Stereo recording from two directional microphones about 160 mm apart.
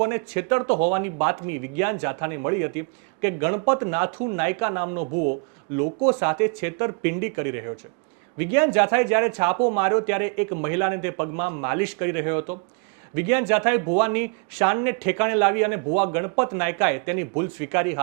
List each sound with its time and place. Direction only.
0.0 s speech: 15° right (ahead or behind)
5.1 s speech: 45° right (ahead or behind)
5.7 s speech: 30° right (ahead or behind)
6.1 s speech: 15° right (ahead or behind)